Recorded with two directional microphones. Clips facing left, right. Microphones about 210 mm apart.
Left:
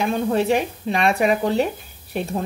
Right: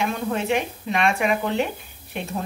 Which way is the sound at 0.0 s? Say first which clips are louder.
Left 5 dB; 35° left (ahead or behind).